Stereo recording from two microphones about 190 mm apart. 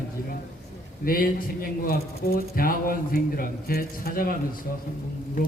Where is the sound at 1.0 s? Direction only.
50° left (ahead or behind).